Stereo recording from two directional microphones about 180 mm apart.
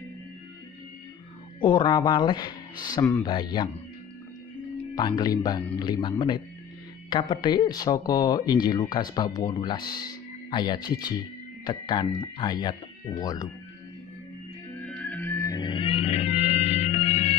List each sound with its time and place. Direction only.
1.6 s speech: 25° left (ahead or behind)
3.3 s speech: 25° left (ahead or behind)
4.9 s speech: 25° left (ahead or behind)
14.9 s music: 5° left (ahead or behind); by 17.4 s 35° left (ahead or behind)